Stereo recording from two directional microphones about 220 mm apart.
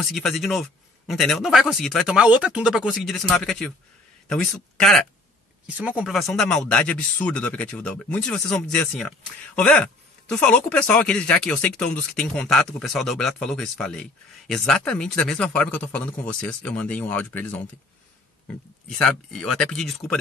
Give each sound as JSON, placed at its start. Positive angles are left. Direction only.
{"t": 0.0, "sound": "speech", "side_deg": 0}
{"t": 18.9, "sound": "speech", "side_deg": 5}